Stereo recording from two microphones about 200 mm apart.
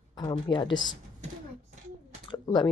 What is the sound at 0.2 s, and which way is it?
Speech, 25° left (ahead or behind).